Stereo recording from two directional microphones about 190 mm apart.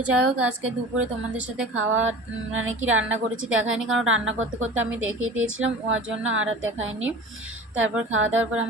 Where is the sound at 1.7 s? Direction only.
90° right.